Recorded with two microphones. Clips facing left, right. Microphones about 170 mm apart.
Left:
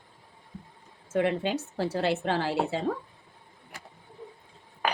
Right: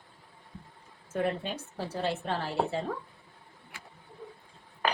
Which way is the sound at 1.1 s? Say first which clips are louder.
Left 5 dB; 90° left.